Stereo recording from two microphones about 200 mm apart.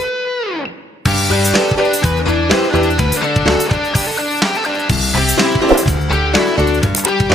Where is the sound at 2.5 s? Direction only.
Centre (ahead or behind).